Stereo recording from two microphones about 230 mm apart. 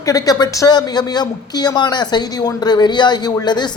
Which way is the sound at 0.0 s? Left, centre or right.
Centre.